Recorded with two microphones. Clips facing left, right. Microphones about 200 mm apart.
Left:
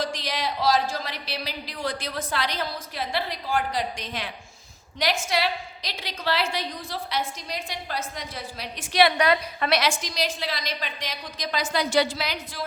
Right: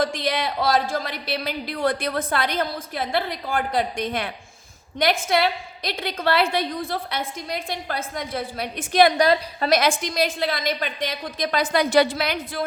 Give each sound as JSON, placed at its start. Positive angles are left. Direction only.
{"t": 0.0, "sound": "a woman's voice", "side_deg": -50}
{"t": 5.3, "sound": "a woman's voice", "side_deg": -55}